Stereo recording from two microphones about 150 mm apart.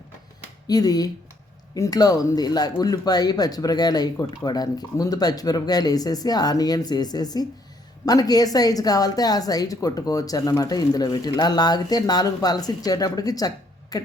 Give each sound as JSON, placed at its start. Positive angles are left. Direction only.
{"t": 0.7, "sound": "speech", "side_deg": 25}